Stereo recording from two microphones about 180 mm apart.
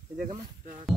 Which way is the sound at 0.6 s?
45° right (ahead or behind).